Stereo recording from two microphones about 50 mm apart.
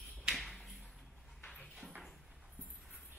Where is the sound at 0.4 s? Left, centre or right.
Centre.